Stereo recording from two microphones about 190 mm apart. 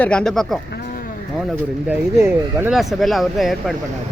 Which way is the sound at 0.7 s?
55° left (ahead or behind).